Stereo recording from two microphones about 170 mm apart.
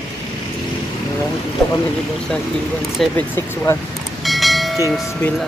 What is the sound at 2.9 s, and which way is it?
Speech, 10° left (ahead or behind).